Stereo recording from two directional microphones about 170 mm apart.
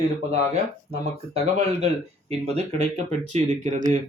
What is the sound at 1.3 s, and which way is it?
Speech, 40° right (ahead or behind).